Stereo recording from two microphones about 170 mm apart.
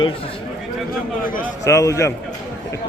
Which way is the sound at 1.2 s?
55° left (ahead or behind).